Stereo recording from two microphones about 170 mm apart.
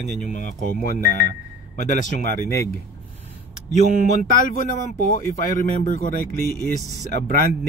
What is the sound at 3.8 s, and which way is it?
Speech, 45° right (ahead or behind).